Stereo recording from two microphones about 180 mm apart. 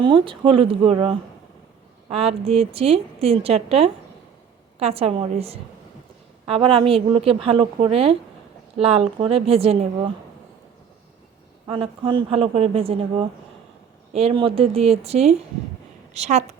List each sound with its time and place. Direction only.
0.0 s a woman's voice: 25° right (ahead or behind)
11.6 s a woman's voice: 25° right (ahead or behind)